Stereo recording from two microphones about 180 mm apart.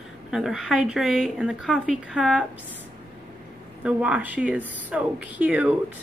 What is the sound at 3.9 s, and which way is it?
Speech, 5° right (ahead or behind).